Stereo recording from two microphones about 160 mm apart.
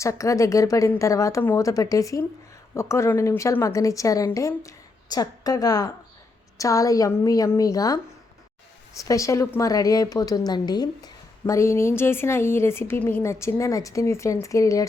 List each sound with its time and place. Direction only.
0.0 s speech: 20° left (ahead or behind)
9.0 s speech: 20° left (ahead or behind)